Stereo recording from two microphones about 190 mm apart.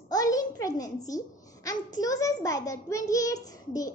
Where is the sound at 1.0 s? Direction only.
20° left (ahead or behind).